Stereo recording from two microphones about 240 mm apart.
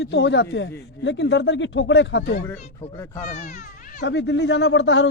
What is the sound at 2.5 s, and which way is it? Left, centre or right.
Speech, left.